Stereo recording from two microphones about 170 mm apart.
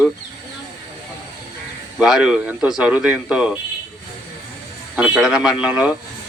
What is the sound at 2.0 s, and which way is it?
A man's voice, 5° right (ahead or behind).